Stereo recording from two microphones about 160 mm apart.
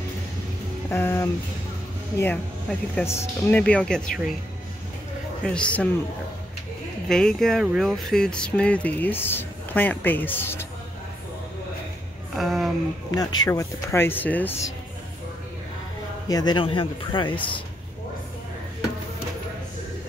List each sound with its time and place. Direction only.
0.8 s speech: 15° left (ahead or behind)
5.4 s speech: 5° left (ahead or behind)
7.1 s speech: 5° left (ahead or behind)
12.4 s speech: centre (ahead or behind)
13.1 s speech: 25° left (ahead or behind)
16.3 s speech: 25° left (ahead or behind)